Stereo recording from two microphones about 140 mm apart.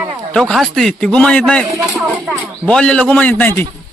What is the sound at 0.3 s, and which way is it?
A man's voice, centre (ahead or behind).